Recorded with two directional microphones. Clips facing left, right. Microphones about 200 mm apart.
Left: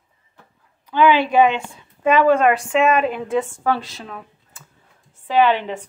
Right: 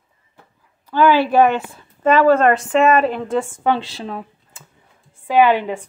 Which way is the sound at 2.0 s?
10° left (ahead or behind).